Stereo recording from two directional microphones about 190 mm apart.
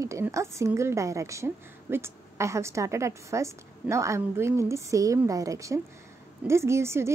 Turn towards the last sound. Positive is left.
turn(degrees=-15)  # may be behind; listen again after turning